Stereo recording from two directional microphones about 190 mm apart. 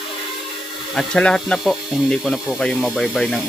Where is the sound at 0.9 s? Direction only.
5° left (ahead or behind).